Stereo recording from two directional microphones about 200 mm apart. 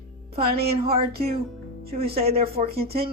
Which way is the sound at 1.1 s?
50° right (ahead or behind).